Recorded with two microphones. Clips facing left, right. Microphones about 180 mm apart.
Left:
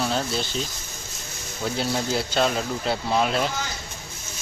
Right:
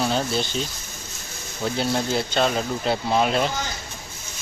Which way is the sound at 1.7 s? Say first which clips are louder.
Right 2 dB; centre (ahead or behind).